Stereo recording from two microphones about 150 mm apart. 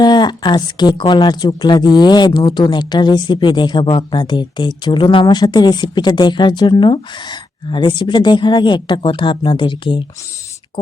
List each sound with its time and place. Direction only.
0.0 s speech: 30° left (ahead or behind)